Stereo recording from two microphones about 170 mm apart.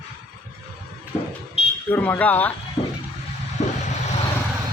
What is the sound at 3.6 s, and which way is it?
Vehicle, 45° left (ahead or behind).